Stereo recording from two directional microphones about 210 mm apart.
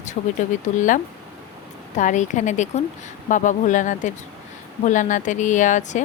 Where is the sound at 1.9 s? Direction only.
35° left (ahead or behind).